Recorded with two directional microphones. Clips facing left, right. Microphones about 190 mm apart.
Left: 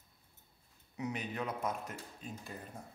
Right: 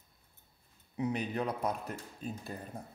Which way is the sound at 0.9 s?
30° right (ahead or behind).